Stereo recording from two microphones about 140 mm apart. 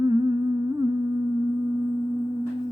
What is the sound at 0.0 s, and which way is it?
Humming, 30° right (ahead or behind).